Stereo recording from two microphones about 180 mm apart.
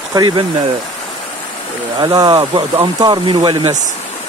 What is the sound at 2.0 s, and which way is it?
Speech, 20° right (ahead or behind).